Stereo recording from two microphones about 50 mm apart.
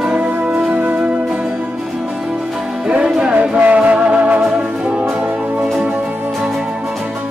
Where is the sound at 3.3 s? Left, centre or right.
Right.